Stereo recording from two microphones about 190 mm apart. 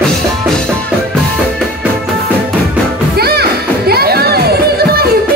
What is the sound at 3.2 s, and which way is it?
Music, 55° right (ahead or behind).